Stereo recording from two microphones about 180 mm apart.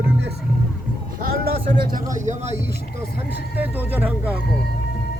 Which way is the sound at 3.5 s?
10° right (ahead or behind).